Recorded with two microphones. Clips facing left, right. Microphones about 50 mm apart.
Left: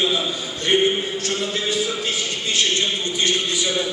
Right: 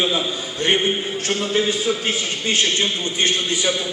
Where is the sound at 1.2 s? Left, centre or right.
Right.